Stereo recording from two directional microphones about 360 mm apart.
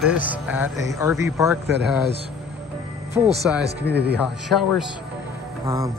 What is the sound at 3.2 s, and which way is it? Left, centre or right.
Speech, centre.